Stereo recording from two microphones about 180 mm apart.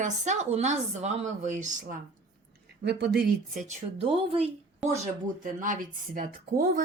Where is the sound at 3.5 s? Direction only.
40° right (ahead or behind).